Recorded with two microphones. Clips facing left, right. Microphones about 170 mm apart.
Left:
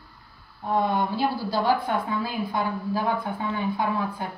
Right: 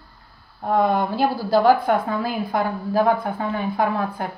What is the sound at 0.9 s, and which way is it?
Speech, 45° right (ahead or behind).